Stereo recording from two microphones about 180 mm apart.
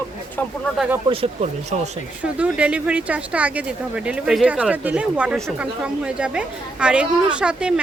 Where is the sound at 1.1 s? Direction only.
35° right (ahead or behind).